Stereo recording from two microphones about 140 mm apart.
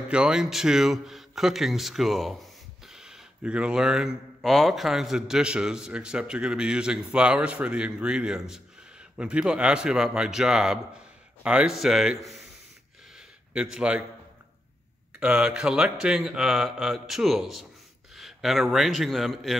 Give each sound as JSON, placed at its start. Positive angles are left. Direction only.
{"t": 0.1, "sound": "speech", "side_deg": -5}
{"t": 13.5, "sound": "speech", "side_deg": -5}
{"t": 15.1, "sound": "a man's voice", "side_deg": -5}